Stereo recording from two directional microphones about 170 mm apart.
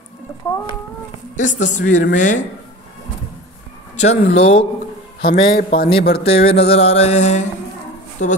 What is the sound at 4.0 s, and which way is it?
Speech, 40° left (ahead or behind).